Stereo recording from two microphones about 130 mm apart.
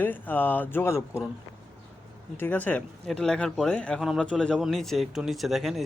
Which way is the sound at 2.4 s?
15° left (ahead or behind).